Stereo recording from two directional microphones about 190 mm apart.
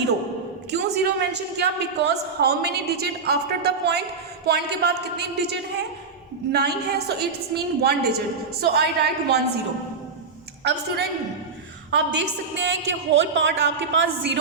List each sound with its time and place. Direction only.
0.7 s a woman's voice: 60° right (ahead or behind)
10.6 s a woman's voice: 60° right (ahead or behind)